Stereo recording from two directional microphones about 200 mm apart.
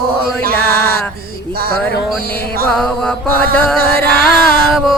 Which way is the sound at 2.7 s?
5° left (ahead or behind).